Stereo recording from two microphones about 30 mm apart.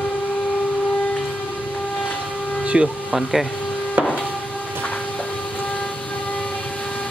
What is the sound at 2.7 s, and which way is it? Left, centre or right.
Speech, right.